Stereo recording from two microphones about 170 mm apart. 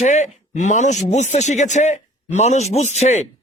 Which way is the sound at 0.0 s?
45° left (ahead or behind).